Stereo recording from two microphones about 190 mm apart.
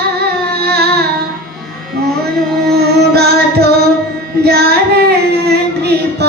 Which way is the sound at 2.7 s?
60° right (ahead or behind).